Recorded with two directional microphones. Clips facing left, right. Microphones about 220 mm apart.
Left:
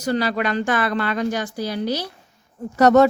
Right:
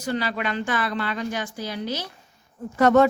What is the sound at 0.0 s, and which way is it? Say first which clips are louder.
Speech: left 5 dB; 40° left (ahead or behind).